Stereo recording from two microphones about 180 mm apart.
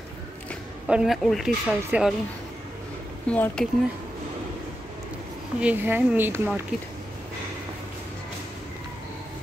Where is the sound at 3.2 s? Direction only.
5° left (ahead or behind).